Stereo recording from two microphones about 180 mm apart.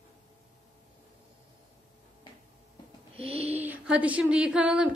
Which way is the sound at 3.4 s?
10° right (ahead or behind).